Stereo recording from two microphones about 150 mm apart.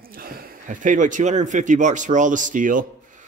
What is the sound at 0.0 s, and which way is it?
Speech, 80° right.